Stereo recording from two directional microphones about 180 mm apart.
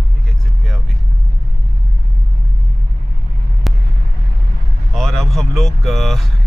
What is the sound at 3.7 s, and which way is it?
Vehicle, centre (ahead or behind).